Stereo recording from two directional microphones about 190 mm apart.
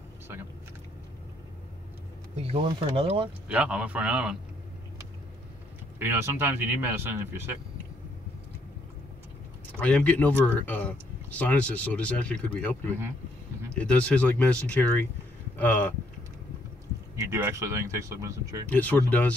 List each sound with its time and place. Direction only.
2.3 s speech: 30° right (ahead or behind)
3.4 s speech: 5° right (ahead or behind)
5.9 s speech: 10° right (ahead or behind)
9.7 s speech: 5° left (ahead or behind)
13.7 s speech: 5° left (ahead or behind)
17.1 s speech: 15° right (ahead or behind)
18.7 s speech: 10° left (ahead or behind)